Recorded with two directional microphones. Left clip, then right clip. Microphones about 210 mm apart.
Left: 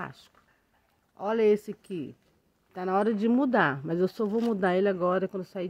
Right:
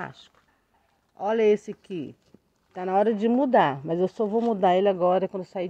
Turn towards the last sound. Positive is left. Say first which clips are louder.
# right 4 dB
turn(degrees=15)  # may be behind; listen again after turning